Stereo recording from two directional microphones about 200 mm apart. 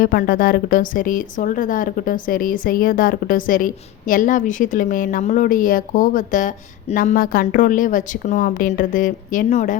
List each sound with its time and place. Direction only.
0.0 s a woman's voice: 50° left (ahead or behind)